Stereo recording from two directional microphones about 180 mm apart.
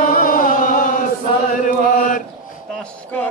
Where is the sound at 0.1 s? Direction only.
50° left (ahead or behind).